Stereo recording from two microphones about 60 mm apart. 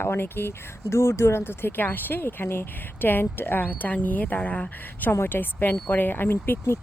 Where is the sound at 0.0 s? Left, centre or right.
Left.